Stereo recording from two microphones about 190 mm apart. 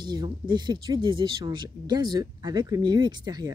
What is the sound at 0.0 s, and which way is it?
Speech, 20° right (ahead or behind).